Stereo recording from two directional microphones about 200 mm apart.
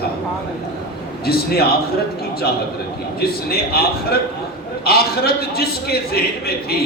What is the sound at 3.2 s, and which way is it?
A man's voice, 50° left (ahead or behind).